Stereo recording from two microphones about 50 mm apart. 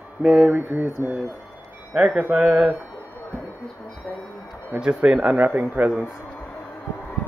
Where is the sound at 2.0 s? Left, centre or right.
Right.